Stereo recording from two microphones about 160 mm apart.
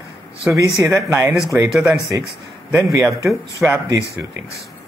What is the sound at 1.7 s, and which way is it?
Speech, 5° right (ahead or behind).